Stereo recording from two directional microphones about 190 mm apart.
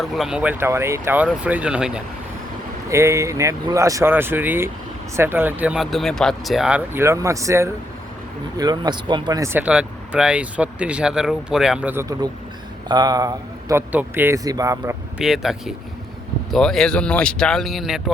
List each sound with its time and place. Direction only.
0.0 s speech: centre (ahead or behind); by 14.9 s 15° right (ahead or behind)
15.2 s speech: centre (ahead or behind)